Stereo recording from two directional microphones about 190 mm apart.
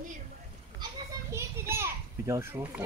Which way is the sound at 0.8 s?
15° right (ahead or behind).